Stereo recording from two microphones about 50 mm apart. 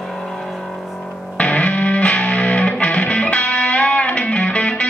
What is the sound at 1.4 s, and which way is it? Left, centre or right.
Music, left.